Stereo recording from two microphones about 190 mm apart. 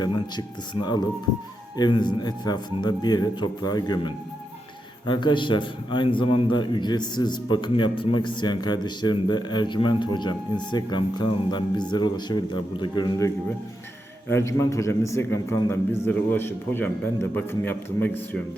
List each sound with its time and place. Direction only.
0.0 s a man's voice: 25° left (ahead or behind)